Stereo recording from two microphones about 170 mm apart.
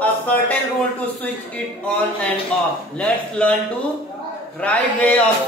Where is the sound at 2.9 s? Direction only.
5° left (ahead or behind).